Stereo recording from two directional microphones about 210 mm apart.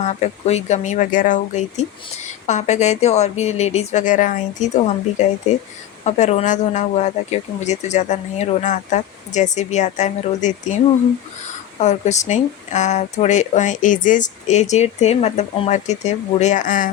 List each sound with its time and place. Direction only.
0.0 s speech: 30° left (ahead or behind)
11.8 s speech: 35° left (ahead or behind)